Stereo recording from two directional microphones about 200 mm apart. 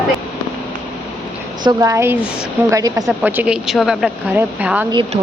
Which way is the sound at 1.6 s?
15° right (ahead or behind).